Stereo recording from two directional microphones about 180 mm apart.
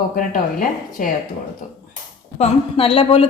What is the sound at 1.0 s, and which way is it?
Speech, 45° left (ahead or behind).